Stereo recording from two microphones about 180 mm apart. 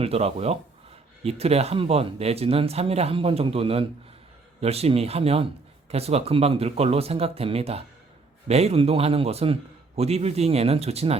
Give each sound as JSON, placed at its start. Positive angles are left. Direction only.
{"t": 0.0, "sound": "a man's voice", "side_deg": -35}